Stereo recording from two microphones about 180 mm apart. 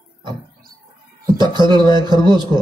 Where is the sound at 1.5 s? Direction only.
25° right (ahead or behind).